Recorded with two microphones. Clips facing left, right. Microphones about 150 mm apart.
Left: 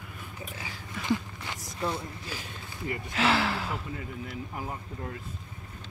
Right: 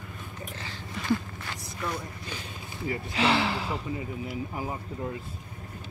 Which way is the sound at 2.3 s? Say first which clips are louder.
Right 1 dB; 5° left (ahead or behind).